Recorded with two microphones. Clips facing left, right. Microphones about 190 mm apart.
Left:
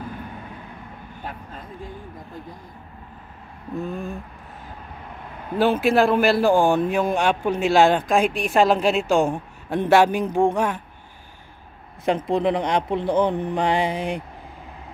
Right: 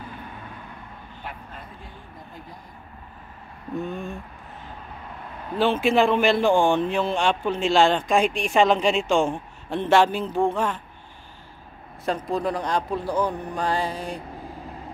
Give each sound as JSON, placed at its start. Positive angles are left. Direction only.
{"t": 3.8, "sound": "speech", "side_deg": 0}
{"t": 5.6, "sound": "a man's voice", "side_deg": 10}
{"t": 12.1, "sound": "speech", "side_deg": 20}